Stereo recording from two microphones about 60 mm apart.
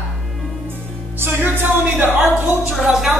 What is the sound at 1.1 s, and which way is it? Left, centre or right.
Speech, right.